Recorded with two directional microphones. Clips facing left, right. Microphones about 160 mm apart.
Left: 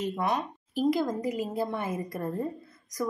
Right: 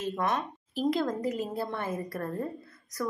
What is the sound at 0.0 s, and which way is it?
A woman's voice, 10° left (ahead or behind).